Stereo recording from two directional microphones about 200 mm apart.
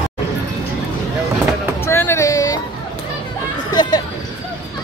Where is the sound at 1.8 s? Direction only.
10° left (ahead or behind).